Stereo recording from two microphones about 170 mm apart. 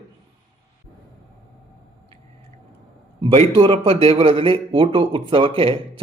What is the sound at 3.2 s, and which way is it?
Speech, 30° right (ahead or behind).